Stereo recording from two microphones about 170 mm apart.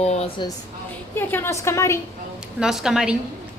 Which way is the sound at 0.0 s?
40° left (ahead or behind).